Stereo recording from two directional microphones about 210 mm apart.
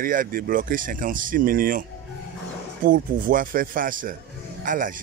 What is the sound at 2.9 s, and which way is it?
Speech, 40° right (ahead or behind).